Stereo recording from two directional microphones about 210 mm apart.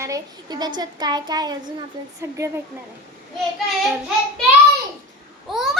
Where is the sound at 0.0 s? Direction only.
15° right (ahead or behind).